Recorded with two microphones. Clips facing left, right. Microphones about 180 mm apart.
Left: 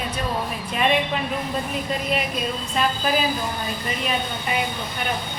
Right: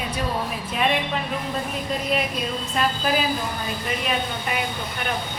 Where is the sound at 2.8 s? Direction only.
Centre (ahead or behind).